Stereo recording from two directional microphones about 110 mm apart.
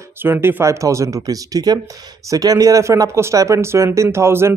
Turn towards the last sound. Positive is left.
turn(degrees=-25)  # may be behind; listen again after turning